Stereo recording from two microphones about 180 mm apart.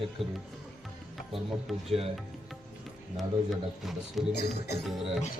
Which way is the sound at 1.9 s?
35° right (ahead or behind).